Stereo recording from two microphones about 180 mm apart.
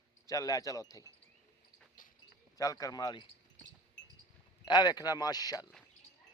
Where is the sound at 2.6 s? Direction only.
20° left (ahead or behind).